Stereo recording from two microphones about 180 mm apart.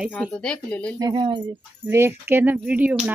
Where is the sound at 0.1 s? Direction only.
5° left (ahead or behind).